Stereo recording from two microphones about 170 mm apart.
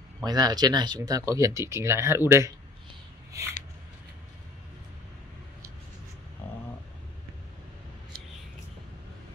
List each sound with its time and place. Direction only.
0.2 s speech: 25° right (ahead or behind)